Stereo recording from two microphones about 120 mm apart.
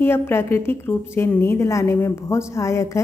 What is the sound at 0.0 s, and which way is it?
A woman's voice, 20° left (ahead or behind).